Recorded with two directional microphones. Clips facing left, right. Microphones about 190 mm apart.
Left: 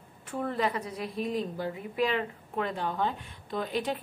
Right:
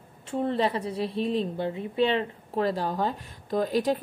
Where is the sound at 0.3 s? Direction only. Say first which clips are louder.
Right 4 dB; 25° right (ahead or behind).